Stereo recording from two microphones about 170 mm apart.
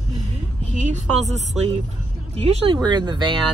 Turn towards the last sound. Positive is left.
turn(degrees=-25)  # may be behind; listen again after turning